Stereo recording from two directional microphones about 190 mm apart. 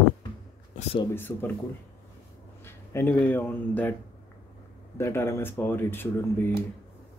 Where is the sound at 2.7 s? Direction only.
10° left (ahead or behind).